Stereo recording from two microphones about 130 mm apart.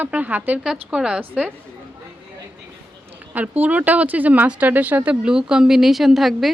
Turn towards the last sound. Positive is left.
turn(degrees=0)  # may be behind; listen again after turning